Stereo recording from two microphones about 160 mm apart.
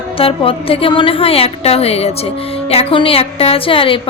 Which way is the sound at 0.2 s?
35° left (ahead or behind).